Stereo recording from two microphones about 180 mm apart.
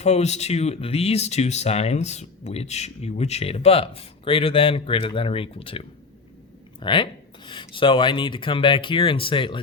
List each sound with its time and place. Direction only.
0.0 s speech: 35° left (ahead or behind)